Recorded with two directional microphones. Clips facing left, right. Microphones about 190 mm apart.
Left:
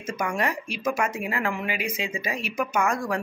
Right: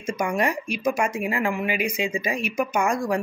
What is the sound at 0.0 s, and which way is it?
Speech, 15° right (ahead or behind).